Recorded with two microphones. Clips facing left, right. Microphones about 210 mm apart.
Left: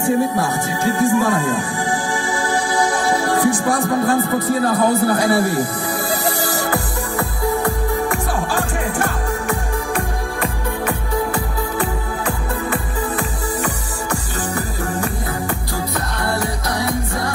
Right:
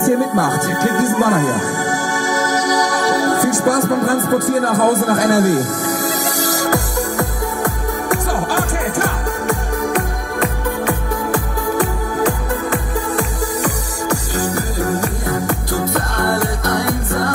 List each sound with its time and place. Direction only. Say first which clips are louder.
0.0 s speech: right 3 dB; 45° right (ahead or behind)
1.9 s music: right 2 dB; 45° right (ahead or behind)
12.3 s music: right 3 dB; 40° right (ahead or behind)